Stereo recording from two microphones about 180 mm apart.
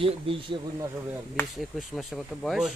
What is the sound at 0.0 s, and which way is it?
Speech, 30° right (ahead or behind).